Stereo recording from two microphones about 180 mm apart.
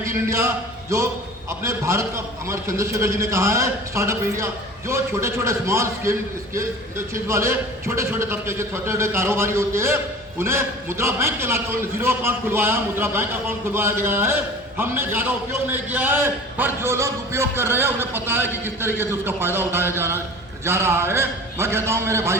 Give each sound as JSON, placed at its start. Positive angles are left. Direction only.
{"t": 0.0, "sound": "a man's voice", "side_deg": -15}